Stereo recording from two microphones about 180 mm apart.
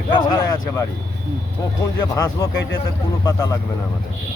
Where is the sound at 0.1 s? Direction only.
25° left (ahead or behind).